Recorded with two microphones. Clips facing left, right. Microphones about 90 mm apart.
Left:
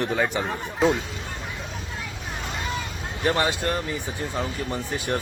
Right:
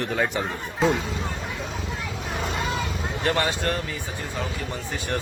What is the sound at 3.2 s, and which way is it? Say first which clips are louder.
Speech: left 1 dB; 20° left (ahead or behind).